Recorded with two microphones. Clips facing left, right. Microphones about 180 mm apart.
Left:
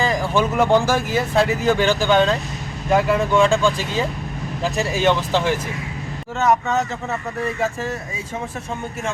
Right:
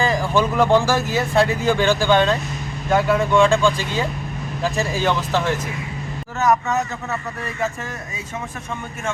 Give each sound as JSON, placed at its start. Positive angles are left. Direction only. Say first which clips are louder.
{"t": 0.3, "sound": "speech", "louder": "even", "side_deg": 15}
{"t": 1.4, "sound": "speech", "louder": "even", "side_deg": 5}
{"t": 4.6, "sound": "speech", "louder": "left 2 dB", "side_deg": 15}